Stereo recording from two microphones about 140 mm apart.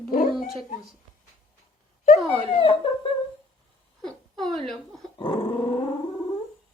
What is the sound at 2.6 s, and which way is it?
Speech, 40° left (ahead or behind).